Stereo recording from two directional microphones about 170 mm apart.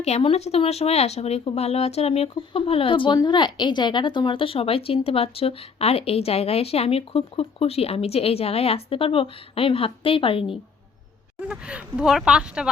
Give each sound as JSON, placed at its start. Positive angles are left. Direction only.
{"t": 0.0, "sound": "speech", "side_deg": 35}
{"t": 11.3, "sound": "speech", "side_deg": -5}